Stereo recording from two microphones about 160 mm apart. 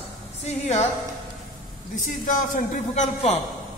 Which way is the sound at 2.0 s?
55° left (ahead or behind).